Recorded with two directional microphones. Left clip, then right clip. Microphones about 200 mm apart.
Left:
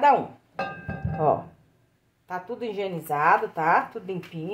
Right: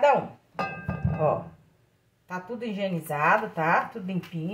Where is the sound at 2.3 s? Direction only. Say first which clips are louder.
Left 3 dB; 40° left (ahead or behind).